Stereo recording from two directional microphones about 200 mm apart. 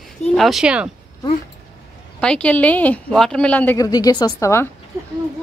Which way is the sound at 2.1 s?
5° left (ahead or behind).